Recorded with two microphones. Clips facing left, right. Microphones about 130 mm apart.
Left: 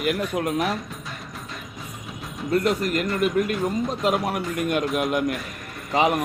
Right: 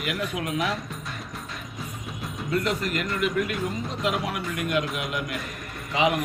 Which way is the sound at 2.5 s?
40° left (ahead or behind).